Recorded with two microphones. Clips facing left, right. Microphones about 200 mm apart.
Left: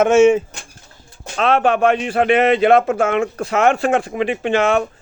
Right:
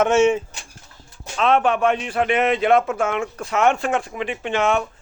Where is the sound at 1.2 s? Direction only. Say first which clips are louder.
Left 2 dB; 90° left.